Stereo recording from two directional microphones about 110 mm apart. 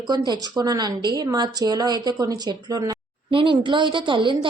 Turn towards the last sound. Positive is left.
turn(degrees=-50)  # may be behind; listen again after turning